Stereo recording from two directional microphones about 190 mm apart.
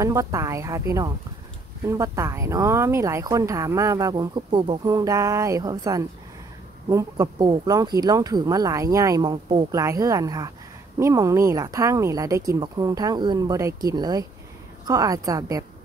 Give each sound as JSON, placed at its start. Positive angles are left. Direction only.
{"t": 0.0, "sound": "speech", "side_deg": -15}